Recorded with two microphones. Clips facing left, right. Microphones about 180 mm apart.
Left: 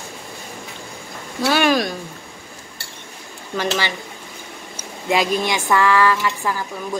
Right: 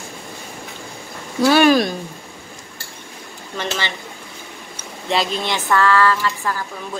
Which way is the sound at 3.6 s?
10° left (ahead or behind).